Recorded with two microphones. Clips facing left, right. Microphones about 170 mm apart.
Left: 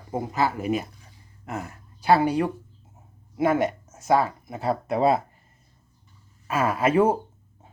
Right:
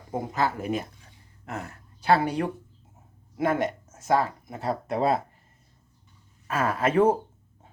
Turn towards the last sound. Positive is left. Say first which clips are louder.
# left 1 dB
turn(degrees=10)  # may be behind; listen again after turning